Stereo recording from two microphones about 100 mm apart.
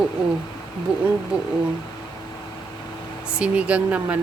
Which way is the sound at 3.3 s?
10° right (ahead or behind).